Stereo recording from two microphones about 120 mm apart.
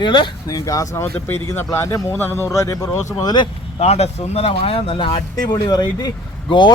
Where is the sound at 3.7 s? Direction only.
60° left (ahead or behind); by 6.7 s 40° left (ahead or behind).